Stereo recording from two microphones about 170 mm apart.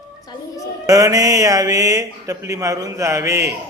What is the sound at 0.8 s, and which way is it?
Speech, 20° right (ahead or behind).